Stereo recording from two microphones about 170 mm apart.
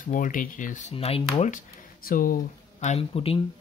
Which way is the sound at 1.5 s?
55° left (ahead or behind).